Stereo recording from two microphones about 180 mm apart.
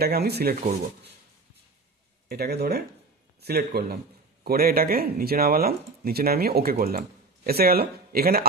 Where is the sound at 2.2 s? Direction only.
60° right (ahead or behind).